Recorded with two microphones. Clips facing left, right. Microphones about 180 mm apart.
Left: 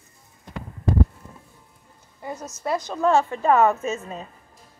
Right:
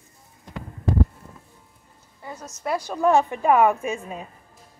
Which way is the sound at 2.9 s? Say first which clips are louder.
Right 1 dB; 15° right (ahead or behind).